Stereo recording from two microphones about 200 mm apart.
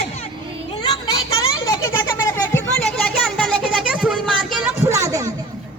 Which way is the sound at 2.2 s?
10° left (ahead or behind).